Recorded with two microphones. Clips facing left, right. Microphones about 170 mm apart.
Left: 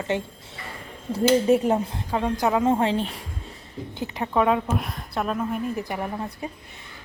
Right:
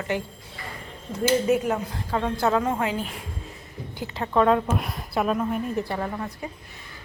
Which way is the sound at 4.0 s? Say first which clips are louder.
Right 1 dB; 20° left (ahead or behind).